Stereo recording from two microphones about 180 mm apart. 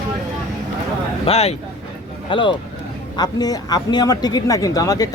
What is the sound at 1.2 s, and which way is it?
Speech, 35° left (ahead or behind).